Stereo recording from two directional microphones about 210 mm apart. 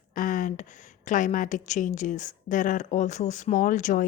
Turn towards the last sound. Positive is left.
turn(degrees=35)  # may be behind; listen again after turning